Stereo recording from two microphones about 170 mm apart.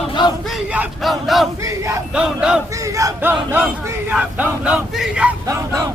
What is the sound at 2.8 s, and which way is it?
Battle cry, 20° right (ahead or behind).